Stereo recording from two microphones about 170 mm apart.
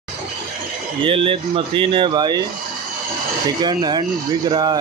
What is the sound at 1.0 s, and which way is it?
Speech, 30° right (ahead or behind).